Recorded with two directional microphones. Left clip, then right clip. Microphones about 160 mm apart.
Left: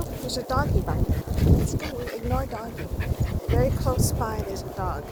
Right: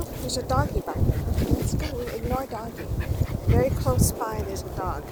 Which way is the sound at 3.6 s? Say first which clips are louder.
Right 1 dB; 25° right (ahead or behind).